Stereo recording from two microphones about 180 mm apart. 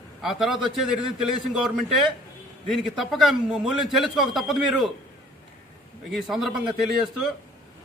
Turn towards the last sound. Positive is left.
turn(degrees=0)  # may be behind; listen again after turning